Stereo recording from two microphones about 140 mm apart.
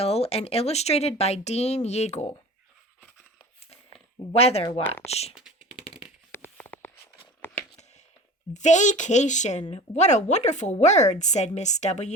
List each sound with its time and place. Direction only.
0.0 s speech: 45° left (ahead or behind)
3.0 s a sound: 5° right (ahead or behind)
4.3 s speech: 45° left (ahead or behind)
5.3 s computer keyboard: 5° right (ahead or behind)
6.3 s a sound: 15° left (ahead or behind)
8.5 s speech: 60° left (ahead or behind)